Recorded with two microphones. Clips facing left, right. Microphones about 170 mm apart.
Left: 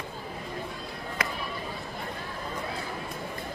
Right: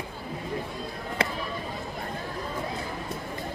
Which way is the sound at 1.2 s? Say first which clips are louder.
Right 4 dB; 30° right (ahead or behind).